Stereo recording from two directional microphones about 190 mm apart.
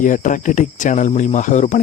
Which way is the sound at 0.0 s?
45° left (ahead or behind).